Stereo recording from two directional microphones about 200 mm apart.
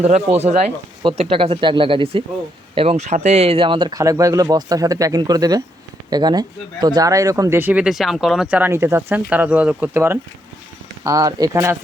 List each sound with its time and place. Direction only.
0.0 s speech: 35° right (ahead or behind); by 11.8 s 15° right (ahead or behind)